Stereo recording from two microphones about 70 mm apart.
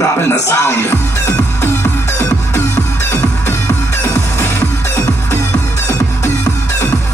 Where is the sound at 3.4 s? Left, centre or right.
Left.